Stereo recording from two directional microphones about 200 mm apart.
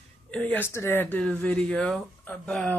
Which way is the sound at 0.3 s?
10° left (ahead or behind).